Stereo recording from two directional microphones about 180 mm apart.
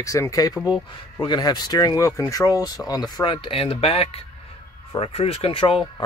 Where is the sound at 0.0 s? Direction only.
15° left (ahead or behind).